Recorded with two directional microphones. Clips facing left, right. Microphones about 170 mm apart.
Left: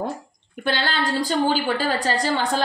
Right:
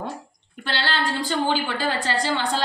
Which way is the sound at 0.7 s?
45° left (ahead or behind).